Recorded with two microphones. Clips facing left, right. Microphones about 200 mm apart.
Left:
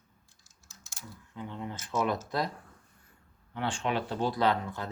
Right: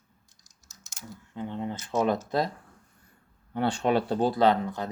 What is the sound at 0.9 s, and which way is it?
Speech, 25° right (ahead or behind).